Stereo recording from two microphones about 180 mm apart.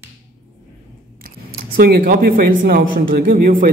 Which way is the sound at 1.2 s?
55° right (ahead or behind).